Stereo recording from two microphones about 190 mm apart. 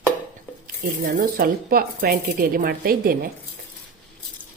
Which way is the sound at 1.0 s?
50° right (ahead or behind).